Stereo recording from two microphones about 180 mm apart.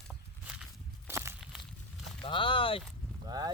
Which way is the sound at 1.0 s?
15° right (ahead or behind).